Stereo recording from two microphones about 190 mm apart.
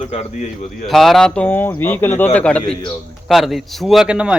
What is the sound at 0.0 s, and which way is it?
Speech, 35° left (ahead or behind).